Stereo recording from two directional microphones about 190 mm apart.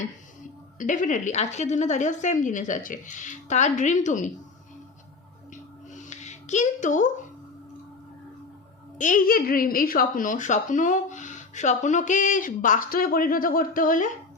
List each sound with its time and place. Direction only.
0.8 s a woman's voice: 40° left (ahead or behind)
5.9 s a sound: 40° left (ahead or behind)
9.0 s a woman's voice: 45° left (ahead or behind)